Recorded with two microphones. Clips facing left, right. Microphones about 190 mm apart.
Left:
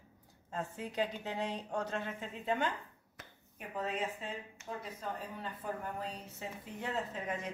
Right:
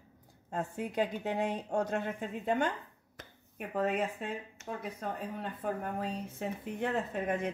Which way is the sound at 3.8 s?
55° right (ahead or behind).